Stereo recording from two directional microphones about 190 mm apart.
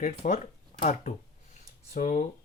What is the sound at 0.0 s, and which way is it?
Speech, 35° left (ahead or behind).